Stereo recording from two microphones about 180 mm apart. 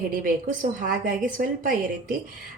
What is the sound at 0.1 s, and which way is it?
A woman's voice, 50° right (ahead or behind).